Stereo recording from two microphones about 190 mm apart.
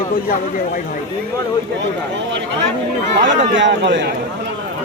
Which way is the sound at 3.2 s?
70° right (ahead or behind).